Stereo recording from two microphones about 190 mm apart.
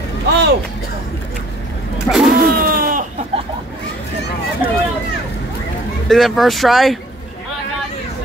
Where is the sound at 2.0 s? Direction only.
Centre (ahead or behind).